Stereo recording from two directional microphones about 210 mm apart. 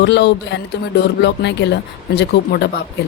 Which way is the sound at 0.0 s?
55° left (ahead or behind).